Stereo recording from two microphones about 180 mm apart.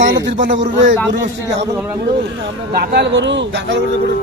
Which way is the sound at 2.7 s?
60° right (ahead or behind).